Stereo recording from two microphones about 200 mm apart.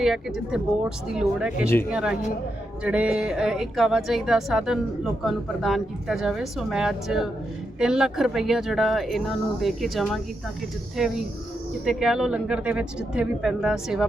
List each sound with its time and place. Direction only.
0.0 s speech: centre (ahead or behind)